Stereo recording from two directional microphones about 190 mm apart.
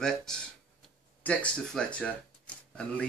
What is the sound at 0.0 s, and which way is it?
Speech, 5° left (ahead or behind).